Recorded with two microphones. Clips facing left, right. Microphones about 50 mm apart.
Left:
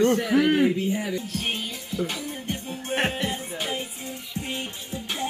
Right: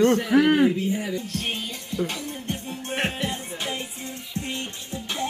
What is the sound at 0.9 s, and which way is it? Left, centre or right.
Music, centre.